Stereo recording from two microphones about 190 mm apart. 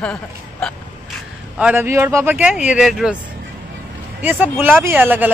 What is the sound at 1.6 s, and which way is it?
Speech, 10° right (ahead or behind).